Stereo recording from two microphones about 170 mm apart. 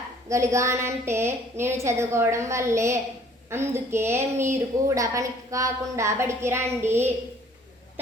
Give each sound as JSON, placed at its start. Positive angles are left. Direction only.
{"t": 0.3, "sound": "a woman's voice", "side_deg": -15}